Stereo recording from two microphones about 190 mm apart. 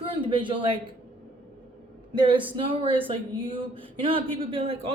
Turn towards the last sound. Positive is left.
turn(degrees=-30)  # may be behind; listen again after turning